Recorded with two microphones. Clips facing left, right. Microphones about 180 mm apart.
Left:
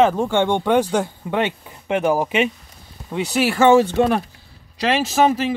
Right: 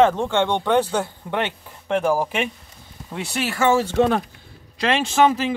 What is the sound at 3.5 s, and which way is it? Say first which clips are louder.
Speech: left 6 dB; 20° left (ahead or behind).